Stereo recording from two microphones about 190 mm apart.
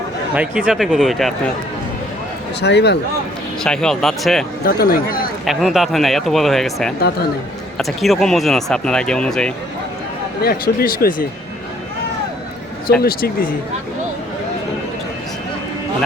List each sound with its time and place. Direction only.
0.3 s speech: 5° right (ahead or behind)
2.6 s a man's voice: 65° left (ahead or behind)
3.6 s speech: 5° left (ahead or behind)
4.6 s speech: 50° left (ahead or behind)
5.5 s speech: centre (ahead or behind)
10.4 s speech: 50° left (ahead or behind)
13.0 s speech: 55° left (ahead or behind)